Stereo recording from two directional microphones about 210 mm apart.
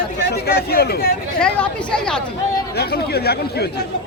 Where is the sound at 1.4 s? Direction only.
5° left (ahead or behind).